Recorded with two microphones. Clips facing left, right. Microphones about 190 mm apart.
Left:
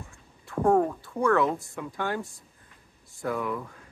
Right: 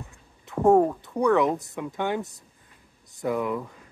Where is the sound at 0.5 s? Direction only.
20° right (ahead or behind).